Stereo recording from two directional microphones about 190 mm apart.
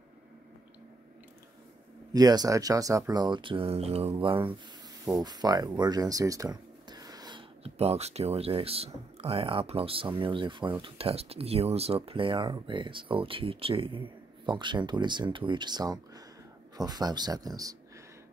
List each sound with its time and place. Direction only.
2.1 s speech: 20° right (ahead or behind)